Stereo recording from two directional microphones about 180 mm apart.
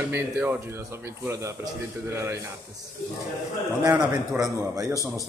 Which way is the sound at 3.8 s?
20° right (ahead or behind).